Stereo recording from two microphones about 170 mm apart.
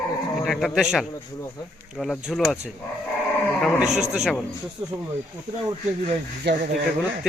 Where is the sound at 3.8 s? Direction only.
45° right (ahead or behind).